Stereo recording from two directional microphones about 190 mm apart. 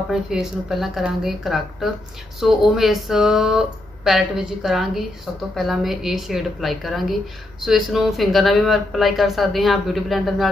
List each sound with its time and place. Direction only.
0.1 s speech: centre (ahead or behind)